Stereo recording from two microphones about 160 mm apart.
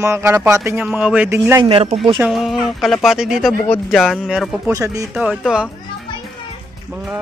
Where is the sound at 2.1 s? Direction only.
Centre (ahead or behind).